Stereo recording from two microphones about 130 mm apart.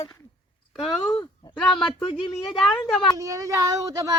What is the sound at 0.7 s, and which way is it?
Speech, centre (ahead or behind).